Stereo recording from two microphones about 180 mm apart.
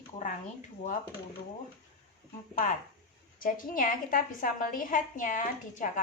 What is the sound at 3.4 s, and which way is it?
A woman's voice, 50° left (ahead or behind).